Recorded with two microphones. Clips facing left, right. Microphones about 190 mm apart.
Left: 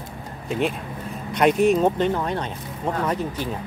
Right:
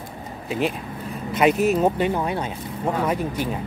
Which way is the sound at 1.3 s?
5° right (ahead or behind).